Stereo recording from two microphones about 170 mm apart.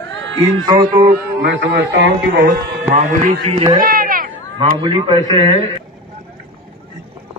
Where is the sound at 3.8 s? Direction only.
55° right (ahead or behind).